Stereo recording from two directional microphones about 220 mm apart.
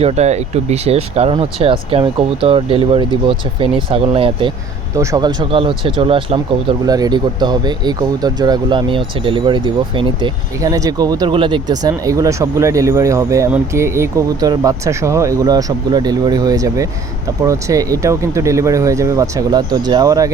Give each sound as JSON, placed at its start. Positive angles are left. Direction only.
{"t": 0.0, "sound": "speech", "side_deg": -30}